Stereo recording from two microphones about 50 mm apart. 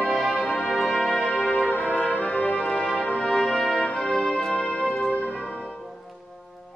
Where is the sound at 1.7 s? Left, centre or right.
Left.